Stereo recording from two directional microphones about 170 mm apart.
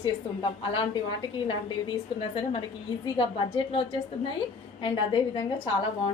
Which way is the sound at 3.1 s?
30° left (ahead or behind).